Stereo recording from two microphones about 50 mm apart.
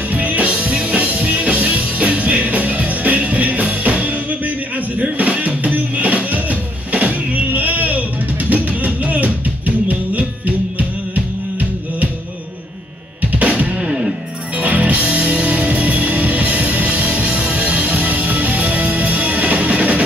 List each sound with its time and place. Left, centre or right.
0.1 s music: right
13.2 s drum kit: right
13.8 s music: centre
14.5 s music: right